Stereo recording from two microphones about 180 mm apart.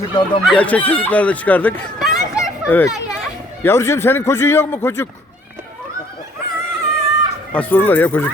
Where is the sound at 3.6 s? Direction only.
15° left (ahead or behind).